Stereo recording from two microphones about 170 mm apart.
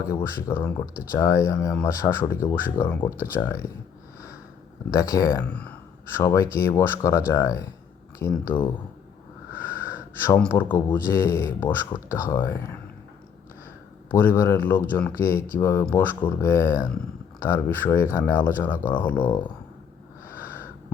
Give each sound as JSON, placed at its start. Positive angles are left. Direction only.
{"t": 0.1, "sound": "speech", "side_deg": 15}
{"t": 4.9, "sound": "speech", "side_deg": 20}
{"t": 9.5, "sound": "a sound", "side_deg": -10}
{"t": 9.9, "sound": "speech", "side_deg": 10}
{"t": 14.1, "sound": "speech", "side_deg": 10}
{"t": 20.4, "sound": "a sound", "side_deg": 10}